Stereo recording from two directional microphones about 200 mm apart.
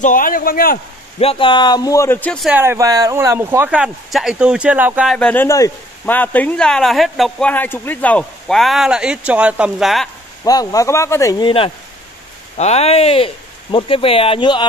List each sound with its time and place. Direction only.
0.0 s speech: 45° left (ahead or behind)
1.2 s speech: 25° left (ahead or behind); by 2.5 s 5° left (ahead or behind)
2.5 s speech: 10° right (ahead or behind)
10.4 s speech: 15° left (ahead or behind)